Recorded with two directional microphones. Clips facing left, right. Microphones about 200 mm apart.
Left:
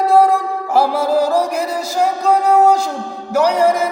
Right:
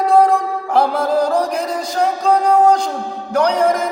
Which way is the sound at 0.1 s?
5° left (ahead or behind).